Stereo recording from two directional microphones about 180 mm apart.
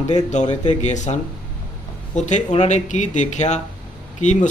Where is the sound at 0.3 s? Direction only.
40° left (ahead or behind).